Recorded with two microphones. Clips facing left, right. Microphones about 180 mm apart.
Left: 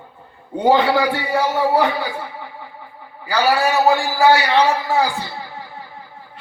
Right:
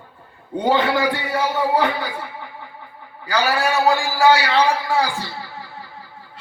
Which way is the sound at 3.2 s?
20° left (ahead or behind).